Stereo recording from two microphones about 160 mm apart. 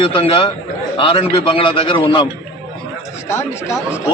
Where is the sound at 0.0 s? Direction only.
35° left (ahead or behind).